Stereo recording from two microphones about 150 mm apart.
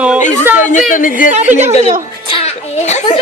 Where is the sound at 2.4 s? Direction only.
50° left (ahead or behind).